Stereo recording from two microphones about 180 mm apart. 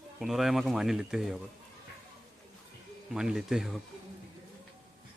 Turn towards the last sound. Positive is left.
turn(degrees=0)  # may be behind; listen again after turning